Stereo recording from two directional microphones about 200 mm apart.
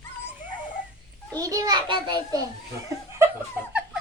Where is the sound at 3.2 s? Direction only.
10° right (ahead or behind).